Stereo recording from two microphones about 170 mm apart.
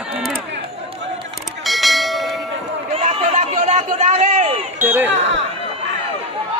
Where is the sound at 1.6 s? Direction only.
Centre (ahead or behind).